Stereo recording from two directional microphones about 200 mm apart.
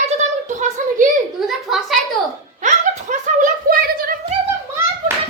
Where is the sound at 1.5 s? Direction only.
Centre (ahead or behind).